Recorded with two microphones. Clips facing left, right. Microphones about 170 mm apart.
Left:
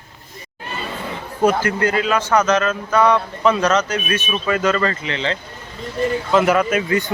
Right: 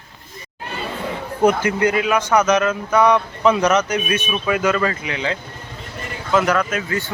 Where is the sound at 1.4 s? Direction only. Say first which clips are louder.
Right 1 dB; 15° right (ahead or behind).